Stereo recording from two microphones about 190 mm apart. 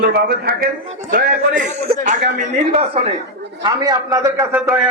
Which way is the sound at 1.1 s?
45° right (ahead or behind).